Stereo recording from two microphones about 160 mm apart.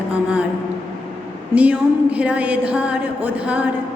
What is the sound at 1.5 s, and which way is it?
A woman's voice, 5° right (ahead or behind).